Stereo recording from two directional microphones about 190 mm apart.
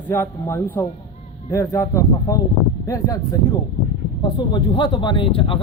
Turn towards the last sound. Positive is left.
turn(degrees=30)  # may be behind; listen again after turning